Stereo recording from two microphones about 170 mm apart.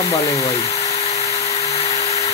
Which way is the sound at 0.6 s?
40° left (ahead or behind).